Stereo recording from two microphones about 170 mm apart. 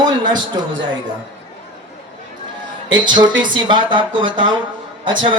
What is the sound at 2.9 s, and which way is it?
Speech, 25° right (ahead or behind).